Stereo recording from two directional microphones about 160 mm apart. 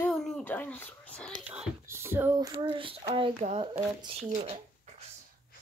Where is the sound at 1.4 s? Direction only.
15° right (ahead or behind).